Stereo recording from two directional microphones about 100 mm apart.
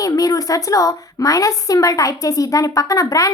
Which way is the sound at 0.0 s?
35° left (ahead or behind).